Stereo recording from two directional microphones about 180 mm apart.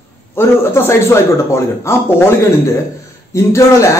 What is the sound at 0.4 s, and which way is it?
A man's voice, 15° left (ahead or behind).